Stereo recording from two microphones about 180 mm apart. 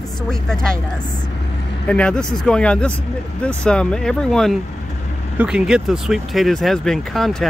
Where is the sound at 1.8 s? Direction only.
5° left (ahead or behind).